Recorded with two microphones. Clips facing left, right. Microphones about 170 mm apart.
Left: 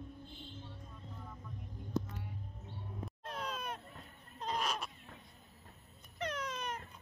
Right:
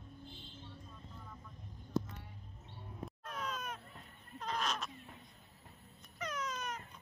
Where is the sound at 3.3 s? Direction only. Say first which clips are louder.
Left 1 dB; 30° left (ahead or behind).